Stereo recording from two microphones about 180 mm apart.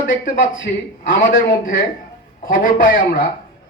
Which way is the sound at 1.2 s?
50° left (ahead or behind).